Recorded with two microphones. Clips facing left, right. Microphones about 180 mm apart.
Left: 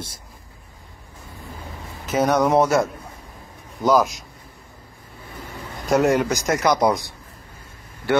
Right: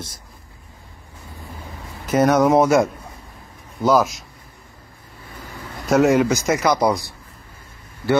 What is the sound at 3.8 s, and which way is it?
Speech, 5° right (ahead or behind).